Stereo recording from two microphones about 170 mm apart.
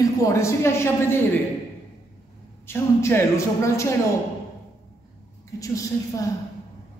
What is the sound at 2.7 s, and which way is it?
A man's voice, 15° left (ahead or behind).